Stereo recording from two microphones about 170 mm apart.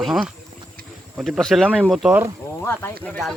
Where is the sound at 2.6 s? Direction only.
10° left (ahead or behind).